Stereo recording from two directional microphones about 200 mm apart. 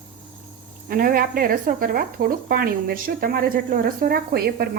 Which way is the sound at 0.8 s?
45° right (ahead or behind).